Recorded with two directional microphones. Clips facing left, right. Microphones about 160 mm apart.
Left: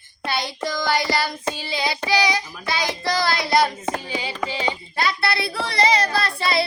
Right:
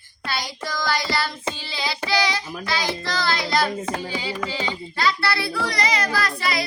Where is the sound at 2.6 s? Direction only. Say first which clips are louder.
Left 1 dB; 20° left (ahead or behind).